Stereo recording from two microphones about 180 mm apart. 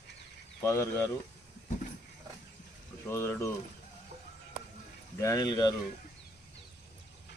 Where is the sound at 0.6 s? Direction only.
15° left (ahead or behind).